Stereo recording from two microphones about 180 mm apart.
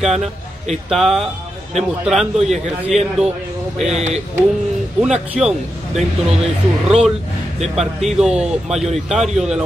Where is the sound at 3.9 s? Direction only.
35° right (ahead or behind).